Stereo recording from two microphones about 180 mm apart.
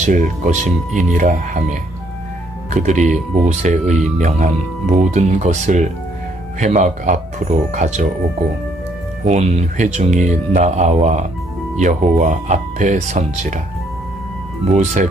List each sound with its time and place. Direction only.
0.0 s speech: 45° right (ahead or behind)
9.2 s speech: 40° right (ahead or behind)
14.8 s speech: 45° right (ahead or behind)